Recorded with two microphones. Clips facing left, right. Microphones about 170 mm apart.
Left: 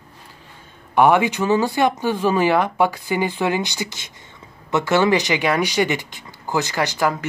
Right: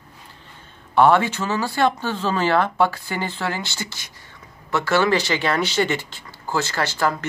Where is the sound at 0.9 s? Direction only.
15° left (ahead or behind).